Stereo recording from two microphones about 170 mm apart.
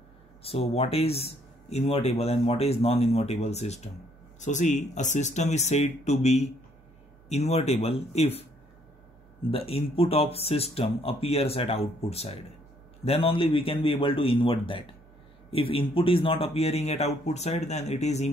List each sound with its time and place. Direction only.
0.4 s speech: 35° left (ahead or behind)
9.5 s speech: 35° left (ahead or behind)